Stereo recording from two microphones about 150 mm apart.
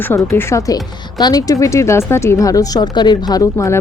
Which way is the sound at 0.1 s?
20° left (ahead or behind).